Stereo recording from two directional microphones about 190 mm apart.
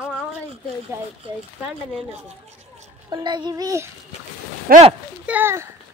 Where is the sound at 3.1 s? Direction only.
25° right (ahead or behind).